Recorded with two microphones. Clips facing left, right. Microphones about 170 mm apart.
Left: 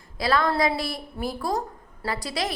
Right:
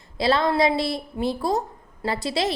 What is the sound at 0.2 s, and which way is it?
A woman's voice, 25° right (ahead or behind).